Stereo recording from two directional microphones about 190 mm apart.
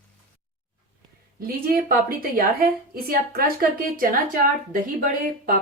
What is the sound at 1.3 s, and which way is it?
A woman's voice, 50° right (ahead or behind).